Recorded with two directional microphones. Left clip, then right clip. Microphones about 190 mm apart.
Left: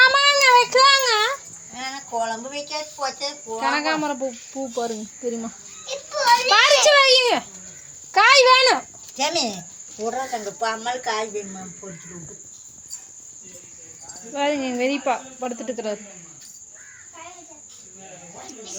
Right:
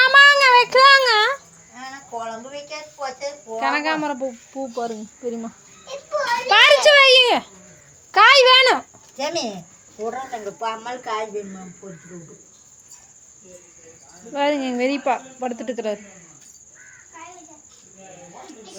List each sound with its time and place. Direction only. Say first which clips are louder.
0.0 s child singing: right 3 dB; 20° right (ahead or behind)
1.7 s a woman's voice: left 4 dB; 10° left (ahead or behind)
6.4 s speech: right 6 dB; 15° right (ahead or behind)
14.3 s speech: right 2 dB; 15° right (ahead or behind)